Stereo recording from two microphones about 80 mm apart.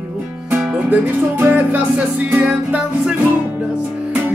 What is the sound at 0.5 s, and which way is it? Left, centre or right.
Music, centre.